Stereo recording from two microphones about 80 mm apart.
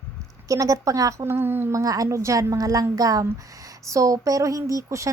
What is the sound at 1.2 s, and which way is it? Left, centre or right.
Speech, right.